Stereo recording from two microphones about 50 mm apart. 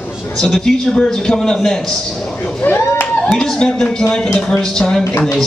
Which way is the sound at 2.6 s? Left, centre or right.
Left.